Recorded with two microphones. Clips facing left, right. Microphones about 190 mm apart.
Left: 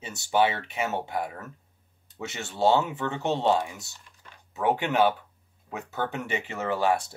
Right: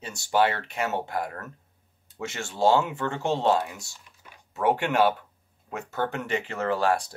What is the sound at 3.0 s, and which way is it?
Speech, 20° left (ahead or behind).